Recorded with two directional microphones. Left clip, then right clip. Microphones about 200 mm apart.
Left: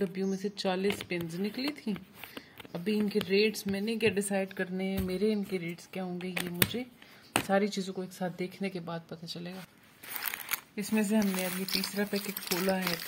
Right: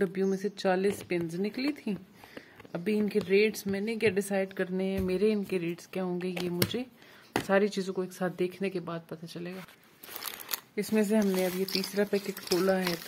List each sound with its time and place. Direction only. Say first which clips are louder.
0.0 s speech: right 4 dB; 15° right (ahead or behind)
11.1 s speech: right 4 dB; 15° right (ahead or behind)